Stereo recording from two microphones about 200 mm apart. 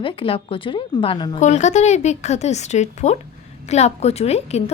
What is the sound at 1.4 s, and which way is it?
A woman's voice, 35° left (ahead or behind).